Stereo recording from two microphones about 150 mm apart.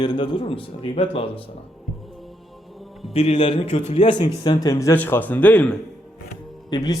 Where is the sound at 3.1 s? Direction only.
40° left (ahead or behind).